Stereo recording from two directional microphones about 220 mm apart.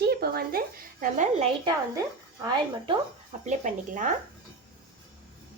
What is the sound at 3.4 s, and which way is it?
Speech, 35° right (ahead or behind).